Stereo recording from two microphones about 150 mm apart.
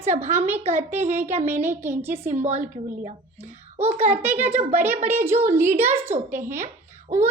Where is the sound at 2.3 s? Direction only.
50° right (ahead or behind).